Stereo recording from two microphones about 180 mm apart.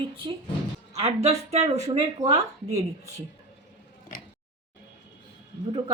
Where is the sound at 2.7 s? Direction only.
20° right (ahead or behind).